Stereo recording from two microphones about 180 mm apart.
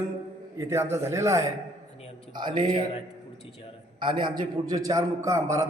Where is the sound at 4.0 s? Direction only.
25° right (ahead or behind).